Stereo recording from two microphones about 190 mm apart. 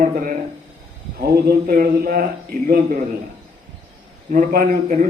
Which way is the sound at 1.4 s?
45° right (ahead or behind).